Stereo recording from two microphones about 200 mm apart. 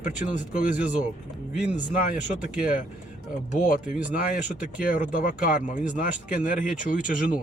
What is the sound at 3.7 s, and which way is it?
Speech, 45° left (ahead or behind).